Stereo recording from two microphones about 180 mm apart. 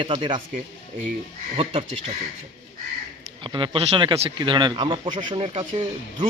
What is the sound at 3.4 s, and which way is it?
Speech, 25° right (ahead or behind).